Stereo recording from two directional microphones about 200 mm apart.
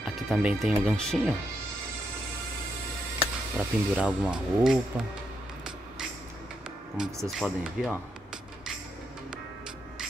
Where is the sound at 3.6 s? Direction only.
5° right (ahead or behind).